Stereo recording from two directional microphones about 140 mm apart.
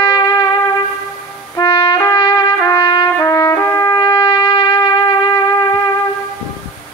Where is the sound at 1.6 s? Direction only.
30° left (ahead or behind).